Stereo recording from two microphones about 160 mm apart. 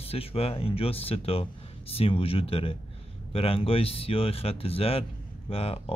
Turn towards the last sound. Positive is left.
turn(degrees=40)  # may be behind; listen again after turning